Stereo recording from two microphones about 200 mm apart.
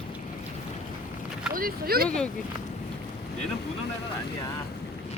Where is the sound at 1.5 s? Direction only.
45° right (ahead or behind).